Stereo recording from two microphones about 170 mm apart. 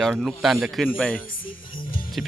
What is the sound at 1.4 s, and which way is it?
Music, 55° left (ahead or behind).